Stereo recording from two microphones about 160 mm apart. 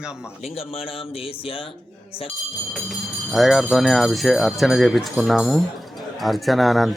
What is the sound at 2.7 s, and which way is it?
Speech, centre (ahead or behind).